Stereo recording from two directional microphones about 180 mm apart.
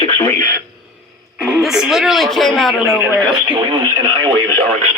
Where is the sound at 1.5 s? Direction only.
Centre (ahead or behind).